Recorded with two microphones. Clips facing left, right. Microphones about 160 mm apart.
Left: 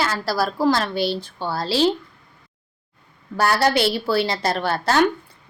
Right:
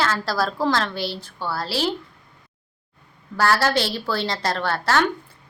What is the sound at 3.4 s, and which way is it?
A woman's voice, 15° left (ahead or behind).